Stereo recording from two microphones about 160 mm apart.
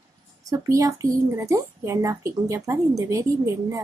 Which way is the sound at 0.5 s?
20° right (ahead or behind).